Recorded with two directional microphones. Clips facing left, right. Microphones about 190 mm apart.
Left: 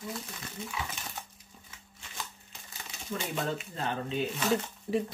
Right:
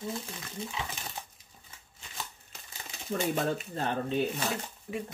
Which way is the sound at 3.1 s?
40° right (ahead or behind).